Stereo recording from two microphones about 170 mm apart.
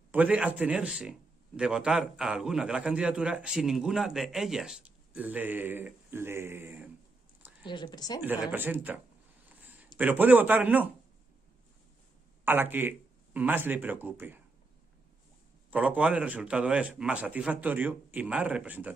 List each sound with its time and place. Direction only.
0.1 s a man's voice: 10° right (ahead or behind)
7.6 s a woman's voice: 25° left (ahead or behind)
8.2 s a man's voice: 10° right (ahead or behind)
12.4 s speech: 10° right (ahead or behind)
15.7 s a man's voice: 10° right (ahead or behind)